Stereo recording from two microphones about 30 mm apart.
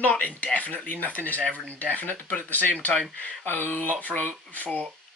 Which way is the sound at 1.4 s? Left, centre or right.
Left.